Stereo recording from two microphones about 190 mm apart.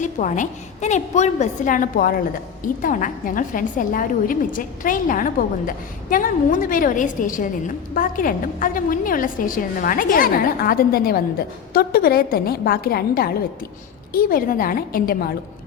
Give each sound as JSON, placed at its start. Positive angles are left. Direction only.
{"t": 0.0, "sound": "a woman's voice", "side_deg": 40}